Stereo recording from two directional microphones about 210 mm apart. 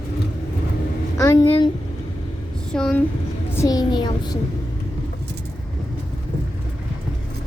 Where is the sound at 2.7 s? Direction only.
5° left (ahead or behind).